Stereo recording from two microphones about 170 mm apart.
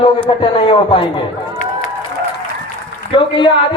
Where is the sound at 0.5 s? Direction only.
30° left (ahead or behind).